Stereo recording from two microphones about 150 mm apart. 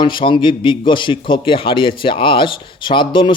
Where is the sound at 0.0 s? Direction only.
30° left (ahead or behind).